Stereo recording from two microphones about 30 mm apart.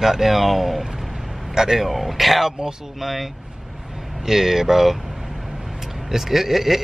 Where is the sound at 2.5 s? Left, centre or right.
Right.